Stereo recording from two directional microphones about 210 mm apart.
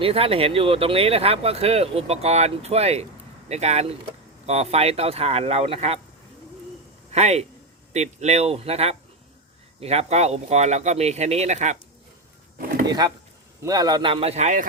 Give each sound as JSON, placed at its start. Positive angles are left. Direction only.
{"t": 0.0, "sound": "speech", "side_deg": -25}
{"t": 7.1, "sound": "speech", "side_deg": -30}
{"t": 13.6, "sound": "speech", "side_deg": -15}